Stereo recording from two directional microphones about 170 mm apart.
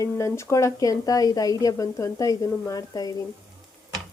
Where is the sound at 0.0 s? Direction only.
15° left (ahead or behind).